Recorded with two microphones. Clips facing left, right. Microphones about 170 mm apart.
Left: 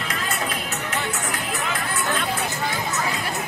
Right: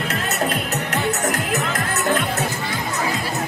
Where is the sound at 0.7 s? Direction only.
40° right (ahead or behind).